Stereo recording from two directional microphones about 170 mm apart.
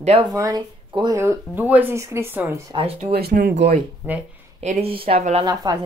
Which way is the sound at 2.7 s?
30° right (ahead or behind).